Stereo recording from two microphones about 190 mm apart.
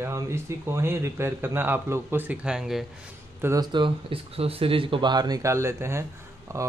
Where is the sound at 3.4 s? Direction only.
20° right (ahead or behind).